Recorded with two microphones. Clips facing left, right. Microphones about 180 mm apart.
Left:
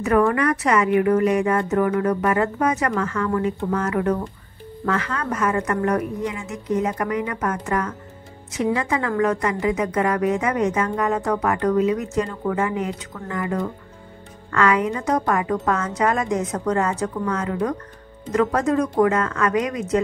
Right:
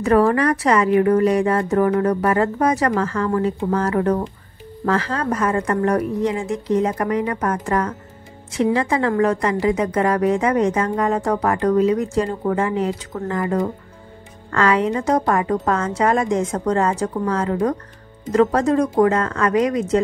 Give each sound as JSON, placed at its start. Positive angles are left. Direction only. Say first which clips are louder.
{"t": 0.0, "sound": "a woman's voice", "louder": "right 3 dB", "side_deg": -35}